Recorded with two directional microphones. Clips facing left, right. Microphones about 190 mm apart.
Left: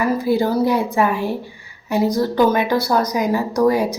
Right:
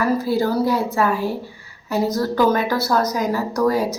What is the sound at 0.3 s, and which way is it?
A woman's voice, 20° left (ahead or behind).